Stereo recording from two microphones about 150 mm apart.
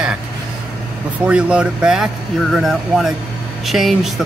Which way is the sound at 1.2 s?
5° right (ahead or behind).